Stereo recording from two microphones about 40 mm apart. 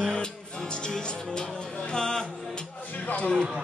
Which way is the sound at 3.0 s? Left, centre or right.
Left.